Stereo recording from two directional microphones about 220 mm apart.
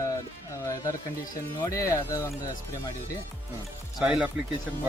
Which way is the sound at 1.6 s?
15° left (ahead or behind).